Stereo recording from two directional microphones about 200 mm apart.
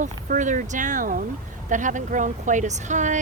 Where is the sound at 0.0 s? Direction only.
40° right (ahead or behind).